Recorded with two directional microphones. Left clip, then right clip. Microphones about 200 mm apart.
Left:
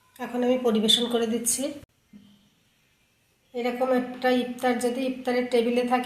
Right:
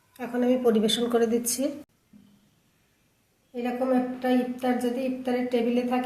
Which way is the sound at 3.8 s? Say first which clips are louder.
Left 2 dB; 20° left (ahead or behind).